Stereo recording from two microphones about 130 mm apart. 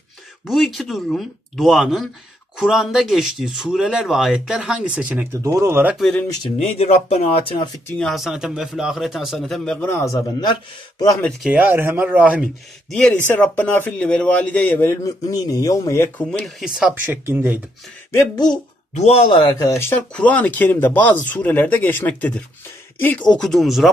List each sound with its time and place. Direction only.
0.5 s speech: centre (ahead or behind); by 5.9 s 20° right (ahead or behind)
5.9 s speech: centre (ahead or behind)
6.7 s speech: 55° left (ahead or behind)
8.0 s speech: centre (ahead or behind)
9.8 s a man's voice: 20° left (ahead or behind)
11.5 s speech: 15° right (ahead or behind)
12.9 s speech: 5° left (ahead or behind)
15.0 s a man's voice: 30° left (ahead or behind)
16.3 s speech: 5° left (ahead or behind)
16.9 s speech: 15° right (ahead or behind)
18.1 s a man's voice: 25° left (ahead or behind)
18.9 s speech: 50° left (ahead or behind)
19.6 s a man's voice: 20° left (ahead or behind)
20.2 s speech: 10° left (ahead or behind)